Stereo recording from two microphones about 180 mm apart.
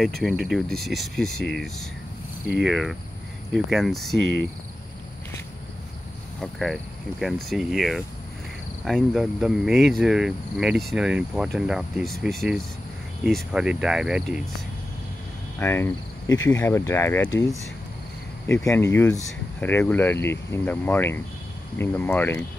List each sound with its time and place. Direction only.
0.4 s speech: centre (ahead or behind)
6.4 s speech: centre (ahead or behind)
15.6 s speech: 15° left (ahead or behind)
18.5 s speech: 15° left (ahead or behind)